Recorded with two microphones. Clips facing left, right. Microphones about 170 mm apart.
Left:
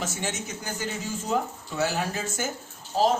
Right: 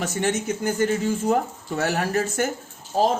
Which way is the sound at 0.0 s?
60° right (ahead or behind).